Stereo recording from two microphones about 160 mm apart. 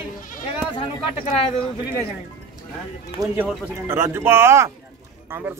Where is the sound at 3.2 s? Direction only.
20° right (ahead or behind).